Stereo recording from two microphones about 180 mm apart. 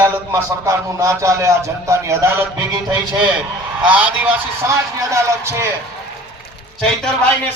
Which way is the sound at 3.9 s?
10° right (ahead or behind).